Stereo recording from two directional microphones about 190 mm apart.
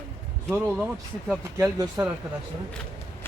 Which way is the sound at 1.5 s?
15° right (ahead or behind).